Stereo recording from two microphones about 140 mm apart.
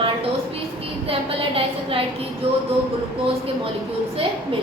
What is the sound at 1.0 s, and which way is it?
A woman's voice, 45° right (ahead or behind).